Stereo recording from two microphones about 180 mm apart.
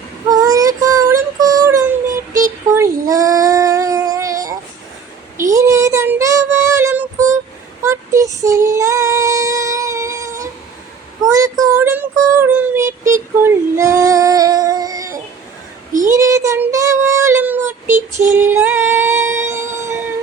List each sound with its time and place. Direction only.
0.3 s child singing: 20° right (ahead or behind)
7.8 s female singing: 15° right (ahead or behind)
11.2 s child singing: 20° right (ahead or behind)
13.4 s female singing: 15° right (ahead or behind)
16.0 s child singing: 15° right (ahead or behind)
17.9 s female singing: 40° right (ahead or behind)
18.3 s singing: 10° right (ahead or behind)